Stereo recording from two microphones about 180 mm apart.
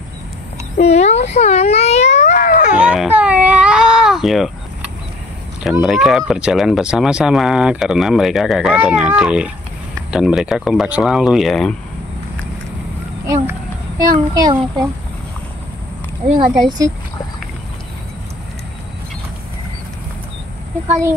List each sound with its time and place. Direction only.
0.7 s a child's voice: 40° left (ahead or behind)
2.8 s baby cry: 5° right (ahead or behind)
5.6 s speech: centre (ahead or behind)
13.3 s a sound: 20° right (ahead or behind)
16.6 s speech: 20° right (ahead or behind)